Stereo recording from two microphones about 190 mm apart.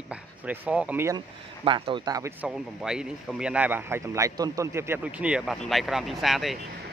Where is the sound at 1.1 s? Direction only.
25° right (ahead or behind).